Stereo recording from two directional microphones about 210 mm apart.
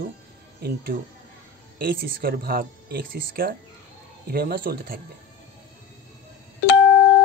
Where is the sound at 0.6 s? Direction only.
50° right (ahead or behind).